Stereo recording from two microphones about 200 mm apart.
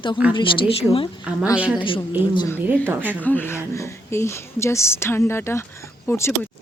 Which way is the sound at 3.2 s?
10° left (ahead or behind).